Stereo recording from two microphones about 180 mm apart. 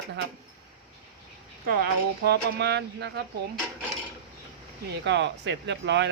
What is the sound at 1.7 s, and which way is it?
Speech, 60° right (ahead or behind).